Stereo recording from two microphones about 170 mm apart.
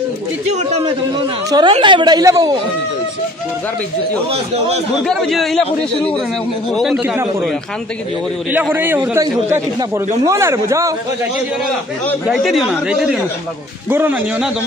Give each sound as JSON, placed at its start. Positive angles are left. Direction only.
{"t": 0.5, "sound": "a man's voice", "side_deg": -40}
{"t": 1.5, "sound": "a woman's voice", "side_deg": -25}
{"t": 4.3, "sound": "a man's voice", "side_deg": -35}
{"t": 5.0, "sound": "speech", "side_deg": 0}
{"t": 6.7, "sound": "speech", "side_deg": 0}
{"t": 7.0, "sound": "speech", "side_deg": -15}
{"t": 8.5, "sound": "speech", "side_deg": -10}
{"t": 12.3, "sound": "speech", "side_deg": 0}